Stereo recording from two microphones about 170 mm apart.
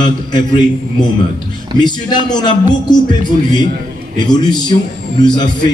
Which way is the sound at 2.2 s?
25° left (ahead or behind).